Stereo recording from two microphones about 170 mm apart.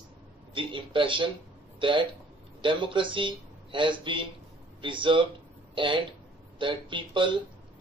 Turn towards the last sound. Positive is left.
turn(degrees=-30)  # may be behind; listen again after turning